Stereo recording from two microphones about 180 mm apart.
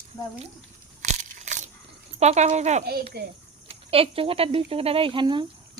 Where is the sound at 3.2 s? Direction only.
60° right (ahead or behind).